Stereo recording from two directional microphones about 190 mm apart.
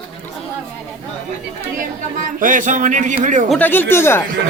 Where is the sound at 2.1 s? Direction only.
45° right (ahead or behind).